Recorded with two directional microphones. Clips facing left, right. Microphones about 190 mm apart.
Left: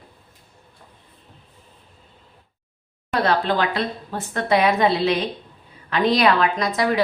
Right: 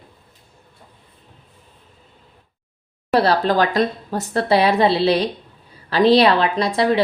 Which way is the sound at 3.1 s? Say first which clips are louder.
Right 4 dB; 35° right (ahead or behind).